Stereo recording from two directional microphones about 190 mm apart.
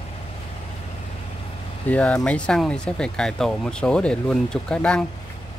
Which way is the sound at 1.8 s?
5° left (ahead or behind).